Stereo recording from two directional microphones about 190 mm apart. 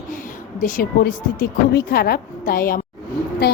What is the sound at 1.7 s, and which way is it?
A woman's voice, 55° left (ahead or behind).